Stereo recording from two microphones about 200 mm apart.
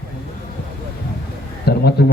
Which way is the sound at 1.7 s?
55° left (ahead or behind).